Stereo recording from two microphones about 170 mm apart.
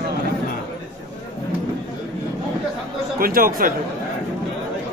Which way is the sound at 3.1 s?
60° right (ahead or behind).